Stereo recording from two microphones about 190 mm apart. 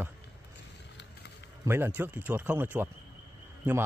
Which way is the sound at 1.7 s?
10° right (ahead or behind).